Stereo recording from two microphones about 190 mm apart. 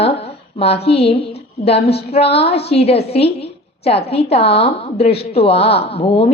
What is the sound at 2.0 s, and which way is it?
A woman's voice, 30° left (ahead or behind).